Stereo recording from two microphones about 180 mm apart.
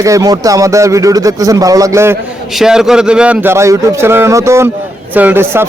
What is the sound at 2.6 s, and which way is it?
A man's voice, 5° right (ahead or behind).